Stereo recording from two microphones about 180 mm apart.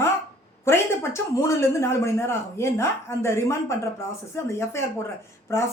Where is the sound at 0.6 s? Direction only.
15° left (ahead or behind).